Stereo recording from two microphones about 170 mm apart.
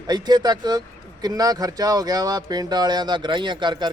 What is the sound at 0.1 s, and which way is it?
Speech, 25° right (ahead or behind).